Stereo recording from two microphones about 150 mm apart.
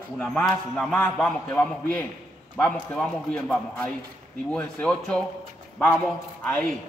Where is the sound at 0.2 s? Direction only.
5° left (ahead or behind).